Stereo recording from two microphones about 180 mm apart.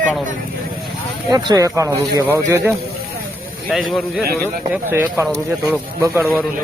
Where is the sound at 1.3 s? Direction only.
20° right (ahead or behind).